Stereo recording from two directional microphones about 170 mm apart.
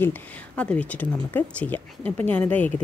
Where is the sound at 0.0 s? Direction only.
10° left (ahead or behind).